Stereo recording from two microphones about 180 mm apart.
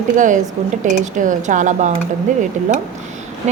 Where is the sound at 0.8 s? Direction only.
45° right (ahead or behind).